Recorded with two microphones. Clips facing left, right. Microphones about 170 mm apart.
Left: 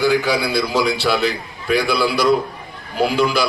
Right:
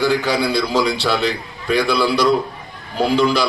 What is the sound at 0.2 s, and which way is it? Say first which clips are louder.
Speech: right 1 dB; 20° right (ahead or behind).